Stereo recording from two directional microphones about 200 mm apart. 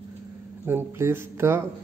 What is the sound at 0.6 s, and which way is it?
Speech, 10° right (ahead or behind).